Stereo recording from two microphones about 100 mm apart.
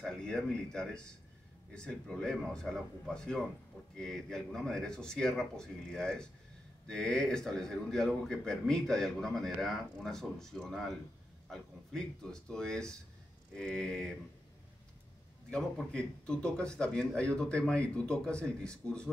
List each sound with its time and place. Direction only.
0.0 s a man's voice: 5° left (ahead or behind)
15.5 s a man's voice: 10° left (ahead or behind)